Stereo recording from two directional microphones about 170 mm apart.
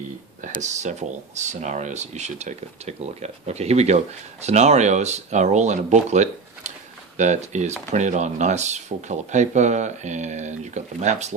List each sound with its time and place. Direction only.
0.4 s speech: 45° right (ahead or behind)